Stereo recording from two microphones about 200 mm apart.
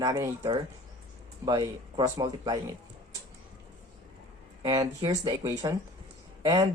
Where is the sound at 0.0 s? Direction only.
20° right (ahead or behind).